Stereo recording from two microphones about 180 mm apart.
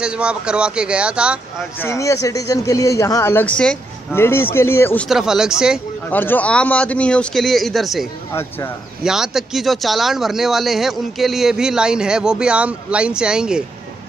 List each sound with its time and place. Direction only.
0.0 s speech: 5° right (ahead or behind)
1.8 s speech: 15° left (ahead or behind); by 5.8 s 5° right (ahead or behind)
6.0 s speech: 10° left (ahead or behind)
8.3 s speech: 15° left (ahead or behind)
9.0 s speech: 5° right (ahead or behind)